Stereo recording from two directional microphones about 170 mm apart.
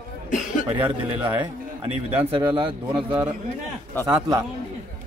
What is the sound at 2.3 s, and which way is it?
Speech, 30° right (ahead or behind).